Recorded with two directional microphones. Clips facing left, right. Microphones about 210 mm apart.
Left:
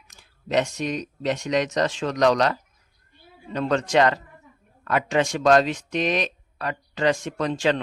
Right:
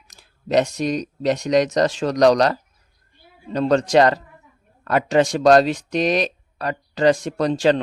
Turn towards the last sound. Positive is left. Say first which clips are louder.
# right 5 dB
turn(degrees=-35)  # may be behind; listen again after turning